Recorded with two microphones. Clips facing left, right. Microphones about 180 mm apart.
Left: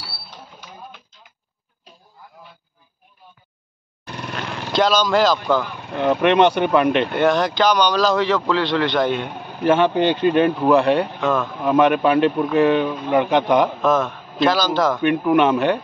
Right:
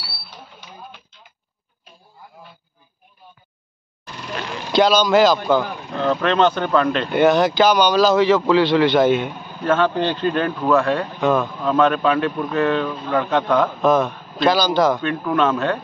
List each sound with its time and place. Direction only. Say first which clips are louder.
4.0 s vehicle: left 4 dB; 60° left (ahead or behind)
4.4 s speech: right 2 dB; centre (ahead or behind)
5.9 s a man's voice: left 3 dB; 15° left (ahead or behind)
7.1 s speech: right 3 dB; centre (ahead or behind)
9.6 s a man's voice: left 2 dB; 15° left (ahead or behind)
13.7 s a man's voice: right 2 dB; centre (ahead or behind)
15.0 s a man's voice: left 4 dB; 15° left (ahead or behind)